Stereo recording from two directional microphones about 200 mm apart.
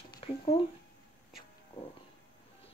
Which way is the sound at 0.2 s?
30° left (ahead or behind).